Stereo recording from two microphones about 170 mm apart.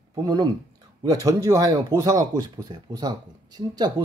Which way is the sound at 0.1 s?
25° right (ahead or behind).